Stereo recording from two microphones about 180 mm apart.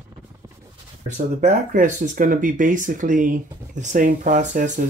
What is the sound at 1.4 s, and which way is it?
Speech, 45° right (ahead or behind).